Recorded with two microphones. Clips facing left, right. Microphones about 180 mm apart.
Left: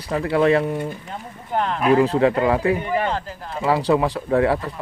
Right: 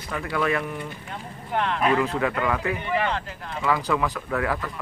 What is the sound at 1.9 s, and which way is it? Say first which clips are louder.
Speech: left 7 dB; 30° left (ahead or behind).